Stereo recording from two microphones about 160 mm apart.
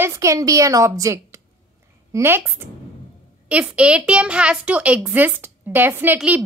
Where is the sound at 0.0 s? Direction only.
20° right (ahead or behind).